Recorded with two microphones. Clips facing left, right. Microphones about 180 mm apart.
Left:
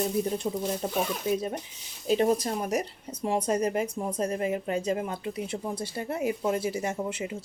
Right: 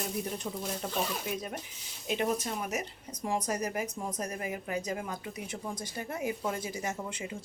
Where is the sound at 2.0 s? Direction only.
35° left (ahead or behind).